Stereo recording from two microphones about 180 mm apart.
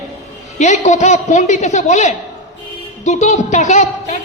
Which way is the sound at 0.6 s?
40° left (ahead or behind).